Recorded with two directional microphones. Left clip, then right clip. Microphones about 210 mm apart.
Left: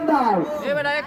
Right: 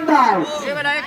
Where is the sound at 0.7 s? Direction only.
40° right (ahead or behind).